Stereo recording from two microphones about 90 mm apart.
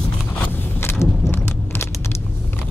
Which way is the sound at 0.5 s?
25° left (ahead or behind).